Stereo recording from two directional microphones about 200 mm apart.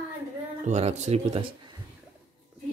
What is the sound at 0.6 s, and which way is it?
Speech, 35° right (ahead or behind).